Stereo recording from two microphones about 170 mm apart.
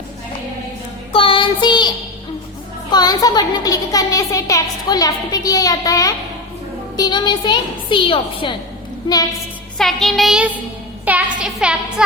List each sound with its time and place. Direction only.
1.1 s child singing: 30° left (ahead or behind)
2.9 s a child's voice: 25° left (ahead or behind)
9.7 s music: centre (ahead or behind)